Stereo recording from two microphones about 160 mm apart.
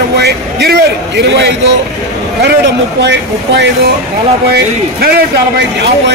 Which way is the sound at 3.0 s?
90° right.